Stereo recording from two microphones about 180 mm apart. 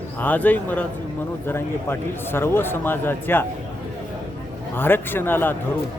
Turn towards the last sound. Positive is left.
turn(degrees=10)  # may be behind; listen again after turning